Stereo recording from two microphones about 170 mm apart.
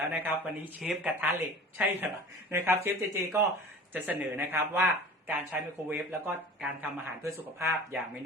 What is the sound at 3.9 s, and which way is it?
Speech, 10° right (ahead or behind).